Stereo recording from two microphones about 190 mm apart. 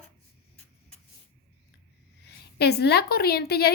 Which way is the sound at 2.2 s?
60° left (ahead or behind).